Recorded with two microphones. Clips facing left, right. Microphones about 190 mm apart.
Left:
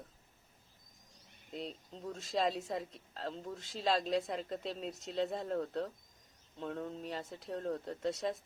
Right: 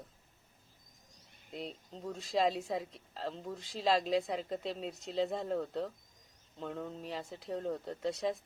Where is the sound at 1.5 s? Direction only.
Centre (ahead or behind).